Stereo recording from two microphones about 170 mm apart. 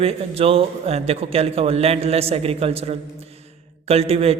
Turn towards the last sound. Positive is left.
turn(degrees=-35)  # may be behind; listen again after turning